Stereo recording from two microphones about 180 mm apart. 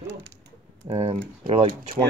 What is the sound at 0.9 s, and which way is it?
Speech, 30° right (ahead or behind).